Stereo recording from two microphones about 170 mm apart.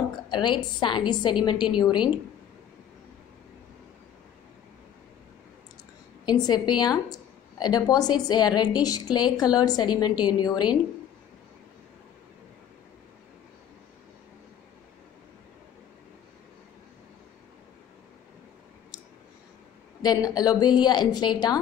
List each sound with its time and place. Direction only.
0.3 s a woman's voice: 25° left (ahead or behind)
6.2 s a woman's voice: 25° left (ahead or behind)
20.0 s a woman's voice: 25° left (ahead or behind)